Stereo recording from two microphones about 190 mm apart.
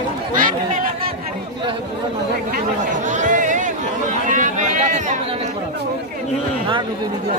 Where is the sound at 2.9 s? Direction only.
40° right (ahead or behind).